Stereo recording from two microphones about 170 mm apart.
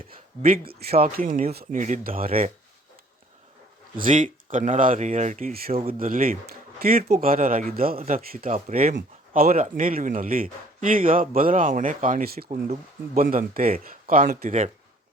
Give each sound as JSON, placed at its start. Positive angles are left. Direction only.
{"t": 0.8, "sound": "speech", "side_deg": -65}
{"t": 3.9, "sound": "speech", "side_deg": -50}
{"t": 5.9, "sound": "speech", "side_deg": -55}